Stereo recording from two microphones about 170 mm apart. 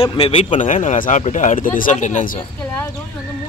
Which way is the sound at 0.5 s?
45° left (ahead or behind).